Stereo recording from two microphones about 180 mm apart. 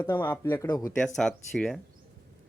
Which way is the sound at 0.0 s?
10° left (ahead or behind).